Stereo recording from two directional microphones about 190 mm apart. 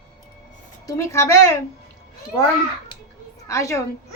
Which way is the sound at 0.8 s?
15° left (ahead or behind).